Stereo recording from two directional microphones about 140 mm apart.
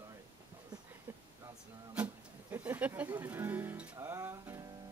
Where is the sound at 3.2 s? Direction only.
15° right (ahead or behind).